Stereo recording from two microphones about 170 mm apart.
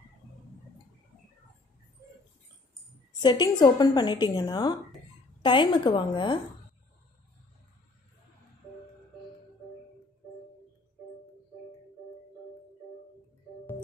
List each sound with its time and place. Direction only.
3.2 s speech: 25° left (ahead or behind)